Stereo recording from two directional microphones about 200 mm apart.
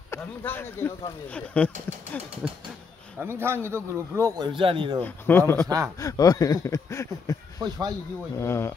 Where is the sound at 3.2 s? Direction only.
10° right (ahead or behind).